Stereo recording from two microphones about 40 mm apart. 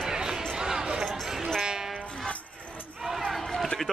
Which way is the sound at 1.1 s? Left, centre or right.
Centre.